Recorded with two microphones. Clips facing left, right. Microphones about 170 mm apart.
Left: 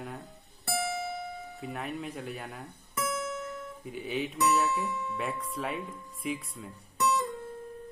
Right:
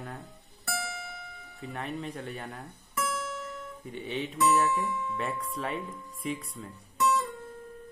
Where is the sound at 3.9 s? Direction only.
Centre (ahead or behind).